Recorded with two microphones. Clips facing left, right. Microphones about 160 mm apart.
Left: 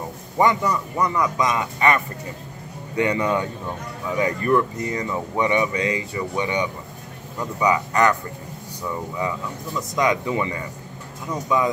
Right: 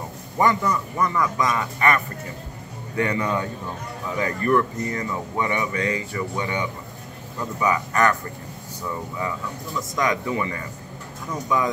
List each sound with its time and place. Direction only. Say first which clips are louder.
0.4 s speech: left 1 dB; 20° left (ahead or behind)
3.0 s speech: left 2 dB; 20° left (ahead or behind)
9.9 s speech: left 3 dB; 20° left (ahead or behind)